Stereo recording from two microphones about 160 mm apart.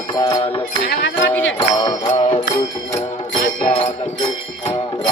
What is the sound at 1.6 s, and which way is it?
Music, 30° left (ahead or behind).